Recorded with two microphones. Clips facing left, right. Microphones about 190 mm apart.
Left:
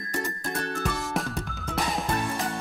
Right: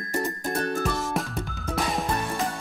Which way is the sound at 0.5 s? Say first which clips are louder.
Right 4 dB; centre (ahead or behind).